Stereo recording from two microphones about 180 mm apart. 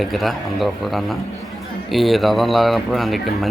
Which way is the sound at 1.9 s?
Centre (ahead or behind).